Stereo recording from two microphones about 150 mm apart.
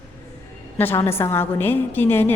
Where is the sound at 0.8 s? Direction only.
15° left (ahead or behind).